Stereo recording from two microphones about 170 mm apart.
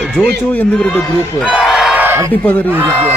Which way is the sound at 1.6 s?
Centre (ahead or behind).